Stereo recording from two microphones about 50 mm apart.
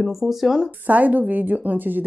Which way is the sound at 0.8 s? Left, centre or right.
Right.